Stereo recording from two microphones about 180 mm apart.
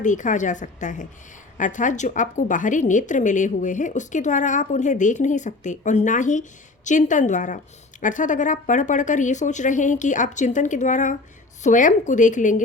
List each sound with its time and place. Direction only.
0.0 s a woman's voice: 45° left (ahead or behind)